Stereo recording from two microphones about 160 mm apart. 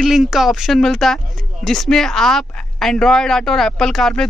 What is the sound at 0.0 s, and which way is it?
Speech, centre (ahead or behind).